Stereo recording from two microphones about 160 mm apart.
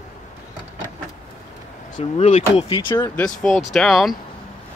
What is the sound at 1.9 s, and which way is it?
Speech, 40° left (ahead or behind).